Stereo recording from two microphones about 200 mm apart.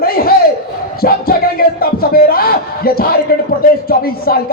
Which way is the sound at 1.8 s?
50° left (ahead or behind).